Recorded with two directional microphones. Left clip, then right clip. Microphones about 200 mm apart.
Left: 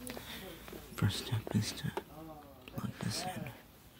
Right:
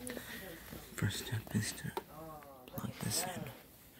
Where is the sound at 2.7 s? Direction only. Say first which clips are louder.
Right 1 dB; centre (ahead or behind).